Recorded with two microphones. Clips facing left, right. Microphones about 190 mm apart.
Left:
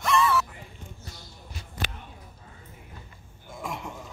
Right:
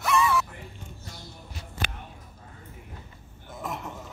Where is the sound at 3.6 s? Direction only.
5° right (ahead or behind).